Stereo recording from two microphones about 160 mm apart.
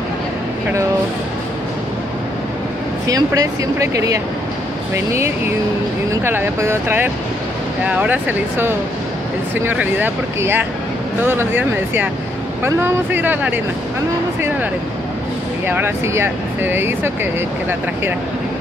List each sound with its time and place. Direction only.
3.1 s speech: 20° right (ahead or behind)
15.6 s speech: 15° right (ahead or behind)